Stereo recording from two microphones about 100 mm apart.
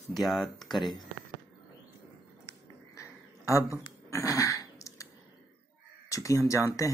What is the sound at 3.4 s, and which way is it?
Speech, 30° left (ahead or behind).